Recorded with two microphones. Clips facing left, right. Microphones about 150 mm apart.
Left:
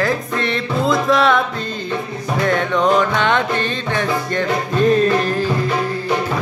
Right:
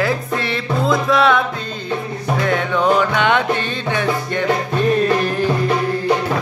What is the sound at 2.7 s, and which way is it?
Music, 5° right (ahead or behind).